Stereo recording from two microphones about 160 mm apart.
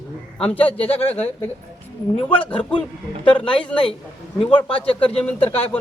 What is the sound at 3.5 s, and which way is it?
Speech, 5° left (ahead or behind).